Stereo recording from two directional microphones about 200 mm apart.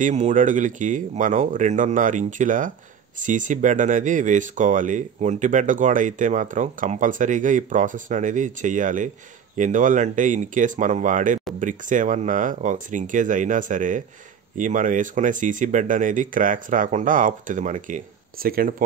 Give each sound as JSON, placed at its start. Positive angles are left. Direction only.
{"t": 0.0, "sound": "speech", "side_deg": -40}